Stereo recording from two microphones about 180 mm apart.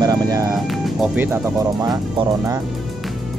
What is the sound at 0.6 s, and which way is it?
Speech, centre (ahead or behind).